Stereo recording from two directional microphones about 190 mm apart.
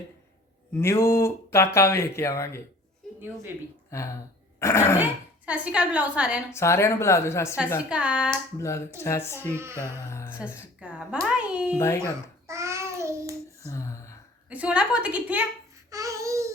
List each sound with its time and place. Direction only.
0.7 s speech: 15° left (ahead or behind)
3.9 s speech: 15° left (ahead or behind)
5.5 s a woman's voice: 5° right (ahead or behind)
6.5 s speech: 15° left (ahead or behind)
7.9 s speech: 5° right (ahead or behind)
8.5 s speech: 15° left (ahead or behind)
9.5 s a woman's voice: 15° right (ahead or behind)
10.1 s speech: 15° left (ahead or behind)
10.8 s a woman's voice: 5° right (ahead or behind)
11.8 s speech: 15° left (ahead or behind)
12.5 s child singing: 15° right (ahead or behind)
13.7 s gasp: 15° left (ahead or behind)
14.5 s a woman's voice: 5° right (ahead or behind)
15.9 s babbling: 15° right (ahead or behind)